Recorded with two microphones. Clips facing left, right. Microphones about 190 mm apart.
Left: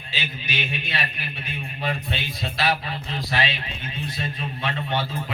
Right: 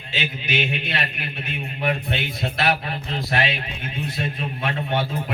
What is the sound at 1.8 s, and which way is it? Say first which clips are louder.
Speech: right 4 dB; 55° right (ahead or behind).